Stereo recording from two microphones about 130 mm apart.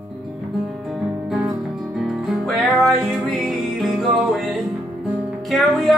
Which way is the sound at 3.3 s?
Centre (ahead or behind).